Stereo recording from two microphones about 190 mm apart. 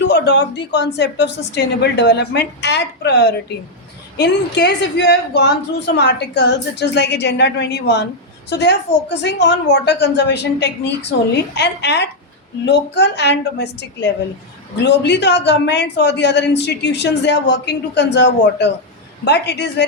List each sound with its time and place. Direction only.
0.1 s a woman's voice: 65° left (ahead or behind)